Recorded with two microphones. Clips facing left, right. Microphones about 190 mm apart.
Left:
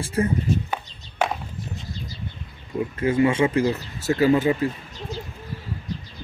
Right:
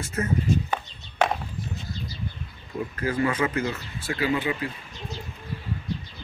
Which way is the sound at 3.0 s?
25° left (ahead or behind).